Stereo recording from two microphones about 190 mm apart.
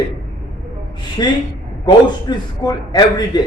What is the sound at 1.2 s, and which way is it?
A man's voice, 25° left (ahead or behind).